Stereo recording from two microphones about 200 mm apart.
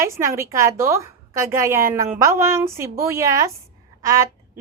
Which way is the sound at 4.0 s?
15° right (ahead or behind).